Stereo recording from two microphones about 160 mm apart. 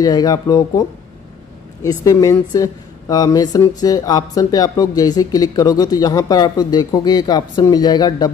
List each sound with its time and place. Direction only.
0.0 s speech: 25° left (ahead or behind)